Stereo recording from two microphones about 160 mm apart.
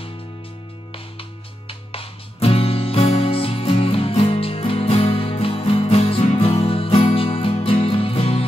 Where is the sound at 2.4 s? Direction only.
35° left (ahead or behind).